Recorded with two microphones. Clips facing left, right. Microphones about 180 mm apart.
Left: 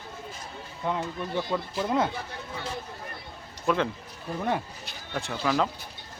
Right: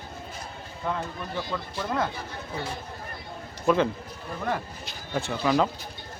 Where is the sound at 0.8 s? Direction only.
15° left (ahead or behind).